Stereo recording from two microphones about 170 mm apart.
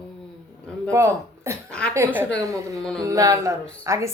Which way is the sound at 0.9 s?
15° right (ahead or behind).